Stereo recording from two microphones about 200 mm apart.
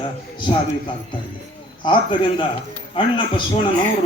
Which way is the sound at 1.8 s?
25° left (ahead or behind).